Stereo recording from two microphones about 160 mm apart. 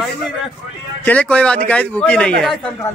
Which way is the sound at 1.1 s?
5° left (ahead or behind).